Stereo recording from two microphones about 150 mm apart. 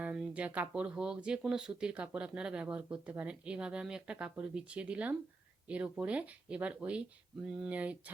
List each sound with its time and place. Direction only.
0.0 s speech: 5° right (ahead or behind)